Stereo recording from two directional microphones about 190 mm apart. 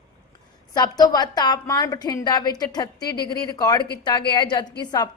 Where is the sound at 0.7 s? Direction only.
20° left (ahead or behind).